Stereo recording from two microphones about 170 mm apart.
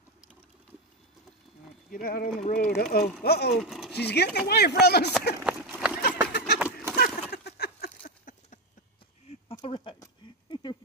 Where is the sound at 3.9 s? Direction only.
75° left (ahead or behind).